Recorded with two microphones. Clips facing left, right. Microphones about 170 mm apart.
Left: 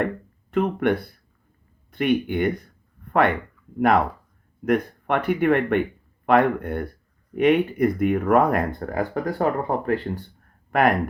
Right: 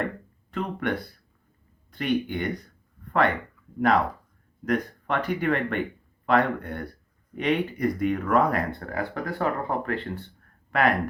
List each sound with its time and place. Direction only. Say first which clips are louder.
0.5 s speech: left 7 dB; 55° left (ahead or behind)